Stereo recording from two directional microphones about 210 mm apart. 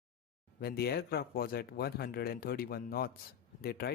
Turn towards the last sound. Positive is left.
turn(degrees=50)  # may be behind; listen again after turning